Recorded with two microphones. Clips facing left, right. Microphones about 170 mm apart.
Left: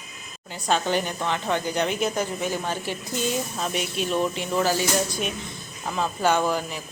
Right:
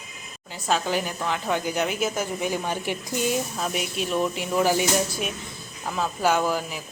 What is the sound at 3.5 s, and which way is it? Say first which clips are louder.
Speech: even; 5° right (ahead or behind).